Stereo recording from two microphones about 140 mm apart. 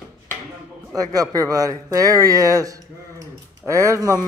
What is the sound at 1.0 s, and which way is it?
Speech, 25° right (ahead or behind).